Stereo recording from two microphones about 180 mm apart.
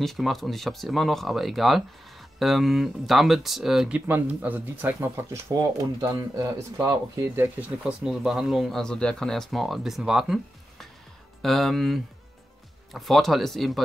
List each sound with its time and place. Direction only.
0.0 s speech: centre (ahead or behind)